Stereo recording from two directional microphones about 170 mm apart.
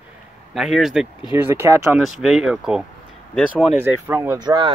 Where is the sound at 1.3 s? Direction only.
15° right (ahead or behind).